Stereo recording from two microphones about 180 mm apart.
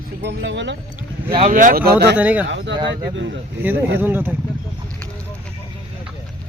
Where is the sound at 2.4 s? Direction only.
80° right.